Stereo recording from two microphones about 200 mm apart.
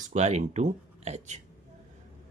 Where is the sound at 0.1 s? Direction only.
35° right (ahead or behind).